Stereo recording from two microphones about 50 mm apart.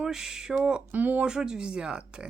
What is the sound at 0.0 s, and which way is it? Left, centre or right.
Speech, centre.